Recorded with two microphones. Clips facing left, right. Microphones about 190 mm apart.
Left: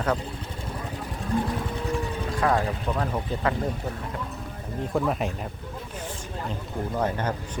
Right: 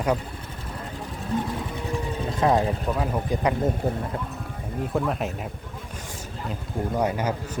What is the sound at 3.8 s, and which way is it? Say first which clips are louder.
Speech: right 7 dB; 35° right (ahead or behind).